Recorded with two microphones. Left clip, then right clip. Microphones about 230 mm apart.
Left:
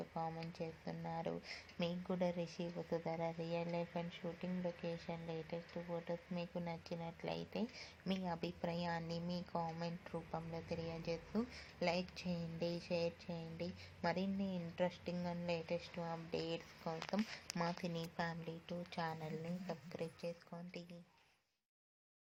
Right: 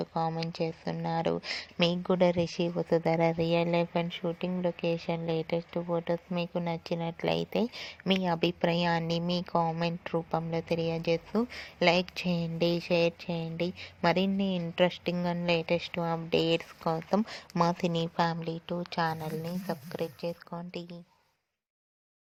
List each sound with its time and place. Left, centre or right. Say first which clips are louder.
0.0 s speech: right 13 dB; right